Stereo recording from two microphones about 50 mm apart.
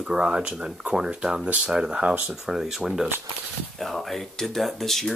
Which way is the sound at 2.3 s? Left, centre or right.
Centre.